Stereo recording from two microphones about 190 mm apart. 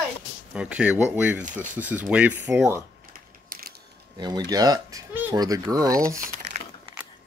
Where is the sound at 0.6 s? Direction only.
5° right (ahead or behind).